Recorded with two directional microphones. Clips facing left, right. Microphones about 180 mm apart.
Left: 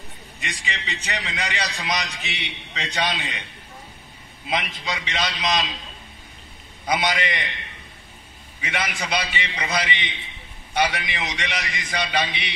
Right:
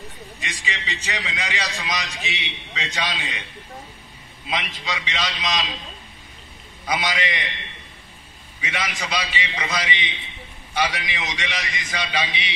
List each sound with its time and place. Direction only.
0.4 s a man's voice: 60° left (ahead or behind)
4.5 s a man's voice: 55° left (ahead or behind)
6.9 s a man's voice: 55° left (ahead or behind)
8.5 s a man's voice: 50° left (ahead or behind)